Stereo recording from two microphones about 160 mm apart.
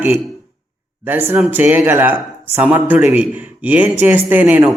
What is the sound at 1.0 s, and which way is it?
A man's voice, 10° right (ahead or behind).